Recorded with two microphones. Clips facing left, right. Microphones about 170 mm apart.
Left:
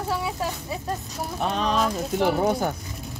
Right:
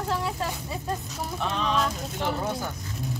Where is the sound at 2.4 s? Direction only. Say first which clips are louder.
Left 7 dB; 60° left (ahead or behind).